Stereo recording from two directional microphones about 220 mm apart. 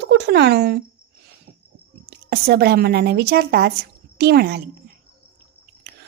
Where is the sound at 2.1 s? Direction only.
45° right (ahead or behind).